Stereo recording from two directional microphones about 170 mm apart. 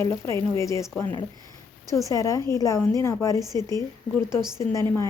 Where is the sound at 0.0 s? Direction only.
15° left (ahead or behind).